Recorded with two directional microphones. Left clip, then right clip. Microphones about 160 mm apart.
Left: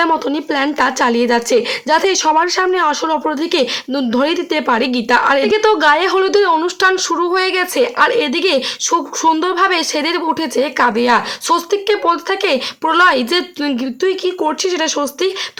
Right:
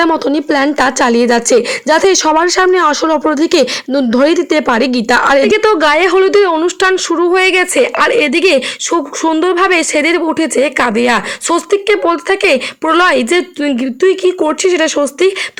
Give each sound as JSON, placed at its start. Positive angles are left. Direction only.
{"t": 0.0, "sound": "a woman's voice", "side_deg": -30}